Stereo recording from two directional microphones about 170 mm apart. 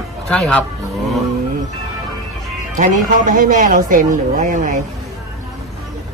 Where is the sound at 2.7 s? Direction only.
50° right (ahead or behind).